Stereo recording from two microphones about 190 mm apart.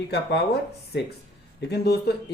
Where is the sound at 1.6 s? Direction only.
60° left (ahead or behind).